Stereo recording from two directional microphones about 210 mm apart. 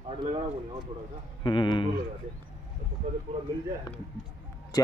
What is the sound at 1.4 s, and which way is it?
Speech, 20° left (ahead or behind).